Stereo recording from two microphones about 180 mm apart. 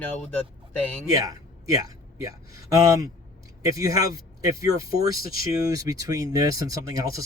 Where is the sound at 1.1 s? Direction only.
20° right (ahead or behind).